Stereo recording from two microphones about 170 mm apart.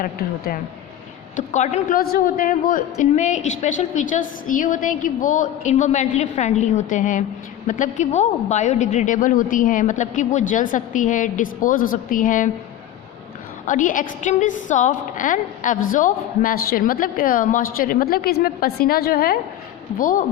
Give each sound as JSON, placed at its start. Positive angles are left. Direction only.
{"t": 0.0, "sound": "a woman's voice", "side_deg": 60}
{"t": 1.4, "sound": "a woman's voice", "side_deg": 45}
{"t": 2.0, "sound": "a woman's voice", "side_deg": 60}
{"t": 13.7, "sound": "a woman's voice", "side_deg": 50}